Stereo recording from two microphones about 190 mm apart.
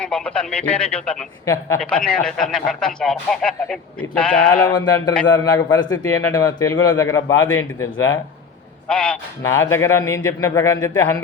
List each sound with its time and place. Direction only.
0.0 s speech: 5° left (ahead or behind)
4.7 s a man's voice: 20° left (ahead or behind)